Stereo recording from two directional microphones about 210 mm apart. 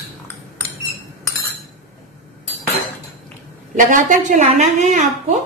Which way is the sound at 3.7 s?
40° right (ahead or behind).